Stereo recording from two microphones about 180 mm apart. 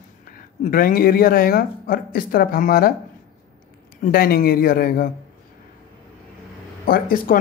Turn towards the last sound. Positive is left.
turn(degrees=50)  # may be behind; listen again after turning